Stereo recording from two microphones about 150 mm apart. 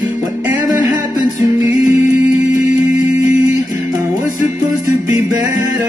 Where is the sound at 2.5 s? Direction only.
60° left (ahead or behind).